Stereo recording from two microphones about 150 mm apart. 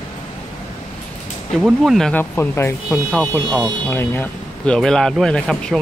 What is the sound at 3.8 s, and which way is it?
Speech, 15° left (ahead or behind).